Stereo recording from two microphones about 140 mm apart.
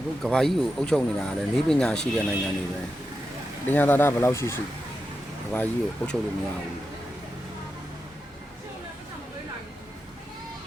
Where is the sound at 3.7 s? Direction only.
15° left (ahead or behind).